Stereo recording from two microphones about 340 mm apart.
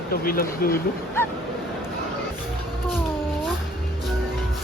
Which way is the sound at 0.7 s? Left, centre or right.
Centre.